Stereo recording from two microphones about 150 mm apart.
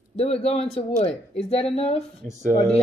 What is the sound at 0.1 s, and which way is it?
Speech, 45° left (ahead or behind).